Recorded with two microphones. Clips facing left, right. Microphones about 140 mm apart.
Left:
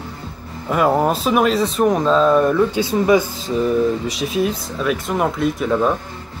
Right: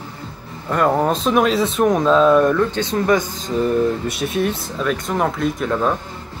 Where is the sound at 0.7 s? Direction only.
5° left (ahead or behind).